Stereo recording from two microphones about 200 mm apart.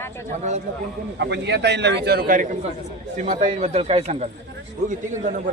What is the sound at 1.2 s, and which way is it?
A man's voice, 60° right (ahead or behind).